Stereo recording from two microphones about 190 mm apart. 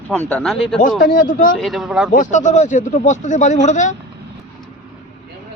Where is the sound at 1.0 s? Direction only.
45° left (ahead or behind).